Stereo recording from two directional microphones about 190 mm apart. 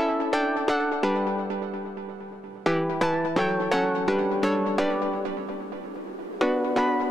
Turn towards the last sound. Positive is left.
turn(degrees=0)  # may be behind; listen again after turning